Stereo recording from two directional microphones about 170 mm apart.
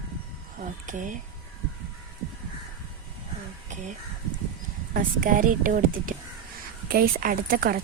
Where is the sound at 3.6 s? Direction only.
45° right (ahead or behind).